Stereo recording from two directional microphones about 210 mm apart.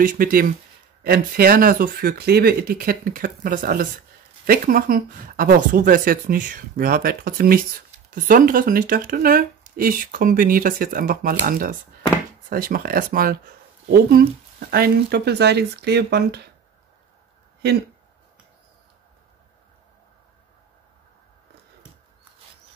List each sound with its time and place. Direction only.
0.0 s speech: 40° right (ahead or behind)
17.6 s speech: 50° right (ahead or behind)